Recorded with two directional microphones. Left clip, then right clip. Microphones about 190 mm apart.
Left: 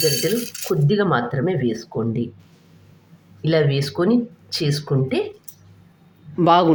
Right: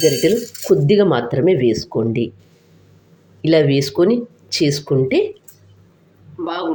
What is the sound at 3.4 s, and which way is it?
Speech, 15° right (ahead or behind).